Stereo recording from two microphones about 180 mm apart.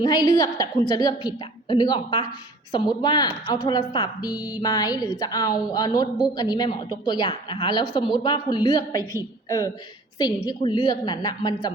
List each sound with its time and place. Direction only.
0.0 s a woman's voice: 20° left (ahead or behind)